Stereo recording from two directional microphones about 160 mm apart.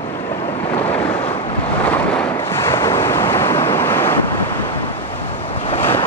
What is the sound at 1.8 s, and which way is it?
Waves, 10° left (ahead or behind).